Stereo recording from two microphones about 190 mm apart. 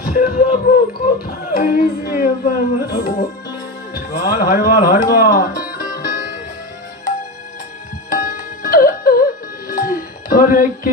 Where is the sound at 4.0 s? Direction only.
55° left (ahead or behind).